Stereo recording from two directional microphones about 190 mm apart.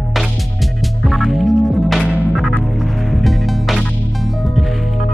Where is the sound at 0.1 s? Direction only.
Centre (ahead or behind).